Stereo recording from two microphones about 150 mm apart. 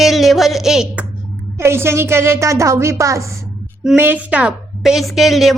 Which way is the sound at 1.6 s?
15° right (ahead or behind).